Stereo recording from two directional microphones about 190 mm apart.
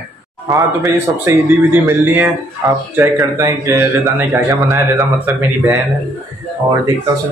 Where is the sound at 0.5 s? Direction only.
15° right (ahead or behind).